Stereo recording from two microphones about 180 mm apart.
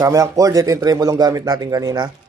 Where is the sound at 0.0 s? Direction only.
20° right (ahead or behind).